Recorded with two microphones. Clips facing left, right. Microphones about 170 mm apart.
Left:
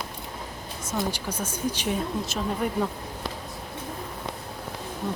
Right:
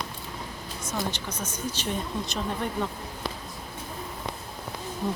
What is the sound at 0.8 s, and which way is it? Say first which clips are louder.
Speech: left 3 dB; 10° left (ahead or behind).